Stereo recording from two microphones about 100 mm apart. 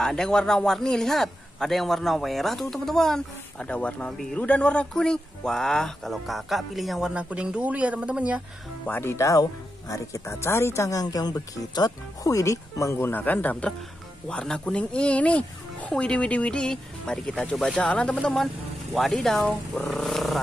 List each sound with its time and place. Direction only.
0.0 s speech: 5° left (ahead or behind); by 8.4 s 10° right (ahead or behind)
8.8 s speech: 25° left (ahead or behind); by 20.3 s centre (ahead or behind)